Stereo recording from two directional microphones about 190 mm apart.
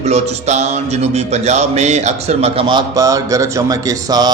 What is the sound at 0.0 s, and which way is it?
A man's voice, 35° right (ahead or behind).